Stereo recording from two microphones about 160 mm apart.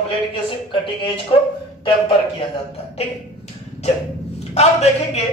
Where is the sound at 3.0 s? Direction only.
40° left (ahead or behind).